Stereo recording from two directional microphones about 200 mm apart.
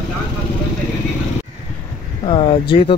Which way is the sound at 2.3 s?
25° left (ahead or behind).